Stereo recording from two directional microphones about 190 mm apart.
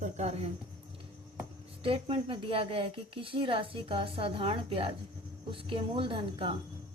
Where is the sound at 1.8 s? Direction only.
30° right (ahead or behind).